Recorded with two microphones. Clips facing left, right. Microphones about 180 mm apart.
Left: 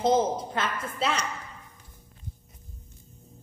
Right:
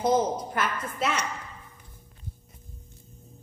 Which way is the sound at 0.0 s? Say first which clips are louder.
Left 1 dB; 25° left (ahead or behind).